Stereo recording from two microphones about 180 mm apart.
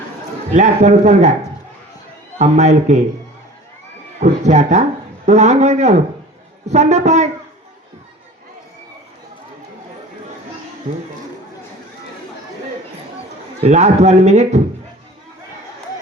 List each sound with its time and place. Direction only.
0.5 s a man's voice: 40° right (ahead or behind)
2.4 s a man's voice: 40° right (ahead or behind)
4.2 s a man's voice: 40° right (ahead or behind)
13.6 s a man's voice: 40° right (ahead or behind)